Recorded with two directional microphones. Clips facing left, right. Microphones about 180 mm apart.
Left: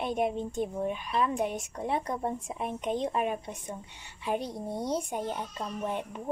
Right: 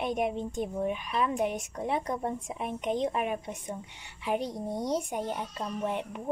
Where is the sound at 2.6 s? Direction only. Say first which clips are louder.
Right 2 dB; 15° right (ahead or behind).